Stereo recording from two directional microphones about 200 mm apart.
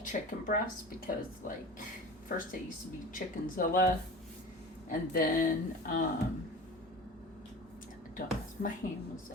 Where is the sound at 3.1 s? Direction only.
45° left (ahead or behind).